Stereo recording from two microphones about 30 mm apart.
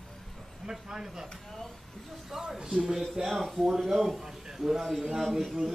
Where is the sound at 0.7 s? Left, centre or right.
Centre.